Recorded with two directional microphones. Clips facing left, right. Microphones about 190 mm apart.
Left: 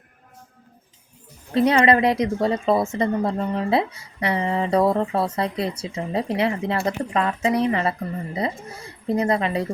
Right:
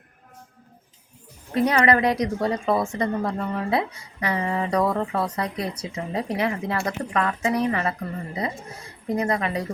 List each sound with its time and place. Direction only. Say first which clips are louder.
1.5 s a woman's voice: left 3 dB; 25° left (ahead or behind)
9.0 s a woman's voice: left 3 dB; 30° left (ahead or behind)